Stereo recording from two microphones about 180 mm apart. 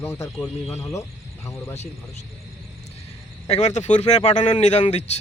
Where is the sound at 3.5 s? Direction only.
40° left (ahead or behind).